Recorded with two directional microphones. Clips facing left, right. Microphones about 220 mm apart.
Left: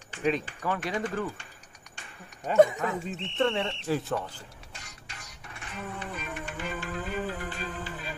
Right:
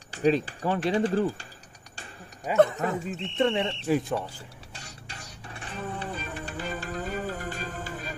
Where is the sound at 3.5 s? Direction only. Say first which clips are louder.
Right 3 dB; 35° right (ahead or behind).